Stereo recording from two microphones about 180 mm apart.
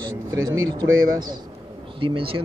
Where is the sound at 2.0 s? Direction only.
30° right (ahead or behind).